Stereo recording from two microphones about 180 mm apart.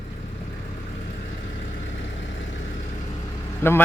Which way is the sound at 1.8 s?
90° left.